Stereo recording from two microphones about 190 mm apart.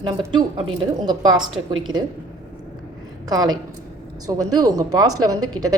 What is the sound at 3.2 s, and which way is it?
A woman's voice, 20° right (ahead or behind).